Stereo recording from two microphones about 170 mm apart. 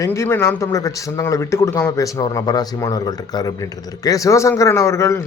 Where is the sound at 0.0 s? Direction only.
15° left (ahead or behind).